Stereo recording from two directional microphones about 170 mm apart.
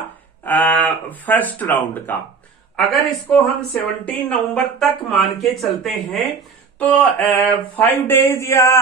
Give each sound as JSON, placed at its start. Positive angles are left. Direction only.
{"t": 0.4, "sound": "speech", "side_deg": 10}